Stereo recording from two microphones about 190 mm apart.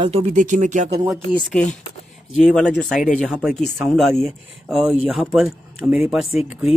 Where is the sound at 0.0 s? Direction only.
30° right (ahead or behind).